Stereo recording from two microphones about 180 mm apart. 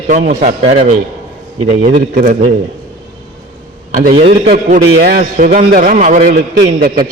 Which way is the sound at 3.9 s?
50° right (ahead or behind).